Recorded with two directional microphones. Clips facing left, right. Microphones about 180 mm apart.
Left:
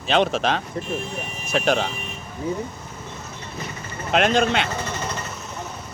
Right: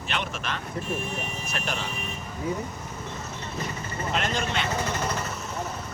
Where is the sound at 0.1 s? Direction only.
90° left.